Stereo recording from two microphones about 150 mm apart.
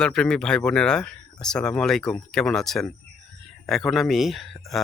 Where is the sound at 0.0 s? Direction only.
5° left (ahead or behind).